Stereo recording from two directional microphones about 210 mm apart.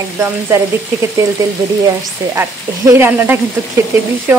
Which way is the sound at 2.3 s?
15° right (ahead or behind).